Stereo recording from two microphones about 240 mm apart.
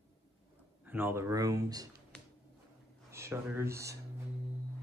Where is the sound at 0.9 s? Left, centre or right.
Centre.